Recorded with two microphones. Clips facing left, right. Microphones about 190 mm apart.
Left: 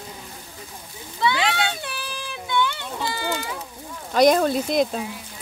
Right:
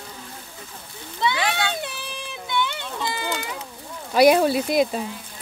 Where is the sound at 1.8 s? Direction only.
20° right (ahead or behind).